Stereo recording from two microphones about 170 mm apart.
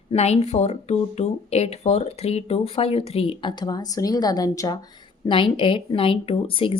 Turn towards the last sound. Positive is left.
turn(degrees=35)  # may be behind; listen again after turning